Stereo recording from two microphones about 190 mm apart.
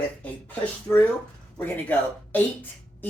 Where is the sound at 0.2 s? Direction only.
10° left (ahead or behind).